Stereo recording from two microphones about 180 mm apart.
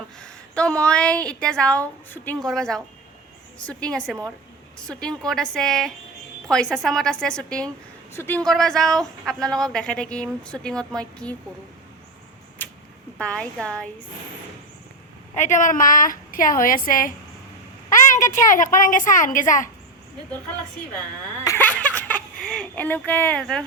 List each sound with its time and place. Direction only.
0.2 s speech: 5° left (ahead or behind)
12.6 s a sound: 10° left (ahead or behind)
13.1 s speech: 5° left (ahead or behind)
15.4 s a woman's voice: 45° left (ahead or behind)
18.3 s a woman's voice: 45° left (ahead or behind)
21.4 s a sound: 15° left (ahead or behind)